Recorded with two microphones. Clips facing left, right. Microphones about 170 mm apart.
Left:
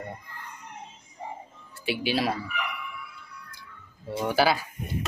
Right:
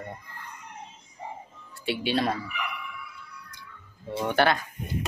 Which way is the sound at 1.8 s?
Centre (ahead or behind).